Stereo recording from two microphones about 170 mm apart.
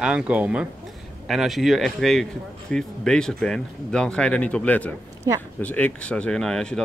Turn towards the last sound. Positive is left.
turn(degrees=5)  # may be behind; listen again after turning